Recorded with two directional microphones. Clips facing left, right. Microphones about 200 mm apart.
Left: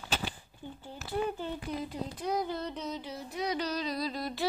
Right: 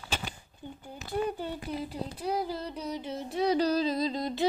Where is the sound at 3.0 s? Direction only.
25° right (ahead or behind).